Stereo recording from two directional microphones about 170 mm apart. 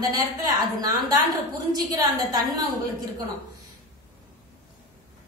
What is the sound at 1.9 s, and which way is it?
Speech, 20° right (ahead or behind).